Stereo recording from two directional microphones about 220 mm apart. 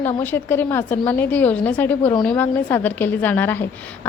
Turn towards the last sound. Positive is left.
turn(degrees=10)  # may be behind; listen again after turning